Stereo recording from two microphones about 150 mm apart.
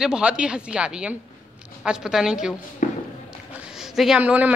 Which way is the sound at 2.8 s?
60° left (ahead or behind).